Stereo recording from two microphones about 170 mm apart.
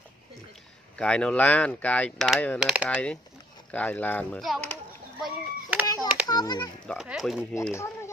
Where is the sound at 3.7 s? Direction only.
10° left (ahead or behind).